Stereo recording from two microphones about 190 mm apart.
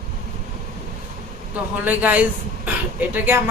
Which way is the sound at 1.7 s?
10° right (ahead or behind).